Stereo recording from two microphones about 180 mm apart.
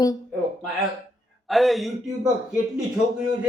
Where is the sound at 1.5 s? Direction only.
Centre (ahead or behind).